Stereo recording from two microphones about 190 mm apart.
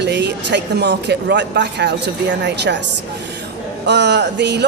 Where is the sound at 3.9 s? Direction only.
65° right (ahead or behind).